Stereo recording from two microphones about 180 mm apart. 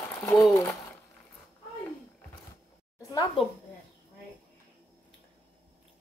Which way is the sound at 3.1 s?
20° left (ahead or behind).